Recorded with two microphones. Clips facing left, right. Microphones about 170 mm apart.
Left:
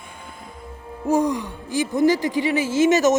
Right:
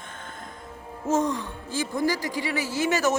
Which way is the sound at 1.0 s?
15° left (ahead or behind).